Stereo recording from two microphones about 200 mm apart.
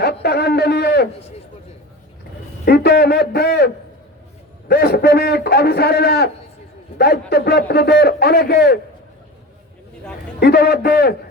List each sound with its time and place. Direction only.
0.0 s a sound: 55° left (ahead or behind)
2.6 s a man's voice: 55° left (ahead or behind)
4.7 s a man's voice: 50° left (ahead or behind)
10.4 s a man's voice: 50° left (ahead or behind)